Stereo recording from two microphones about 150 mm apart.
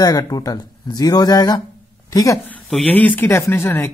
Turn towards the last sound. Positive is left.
turn(degrees=15)  # may be behind; listen again after turning